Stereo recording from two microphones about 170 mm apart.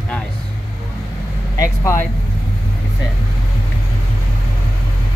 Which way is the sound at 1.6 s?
15° left (ahead or behind).